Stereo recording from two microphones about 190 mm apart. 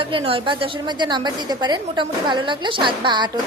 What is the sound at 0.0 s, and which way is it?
A woman's voice, 30° right (ahead or behind).